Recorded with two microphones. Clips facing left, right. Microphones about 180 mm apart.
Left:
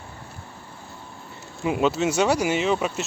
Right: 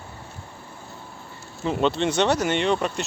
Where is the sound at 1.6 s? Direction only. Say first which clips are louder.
Left 1 dB; 5° left (ahead or behind).